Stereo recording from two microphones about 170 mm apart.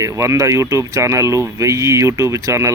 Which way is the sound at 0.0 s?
15° right (ahead or behind).